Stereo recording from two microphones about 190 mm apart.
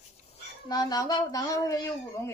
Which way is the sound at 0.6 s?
20° left (ahead or behind).